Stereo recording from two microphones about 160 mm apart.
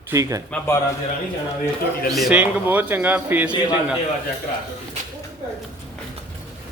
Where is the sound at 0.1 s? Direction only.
20° right (ahead or behind).